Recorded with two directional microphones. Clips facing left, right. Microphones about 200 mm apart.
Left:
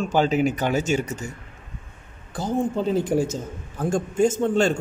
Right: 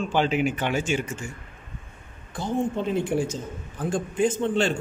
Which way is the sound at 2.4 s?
35° left (ahead or behind).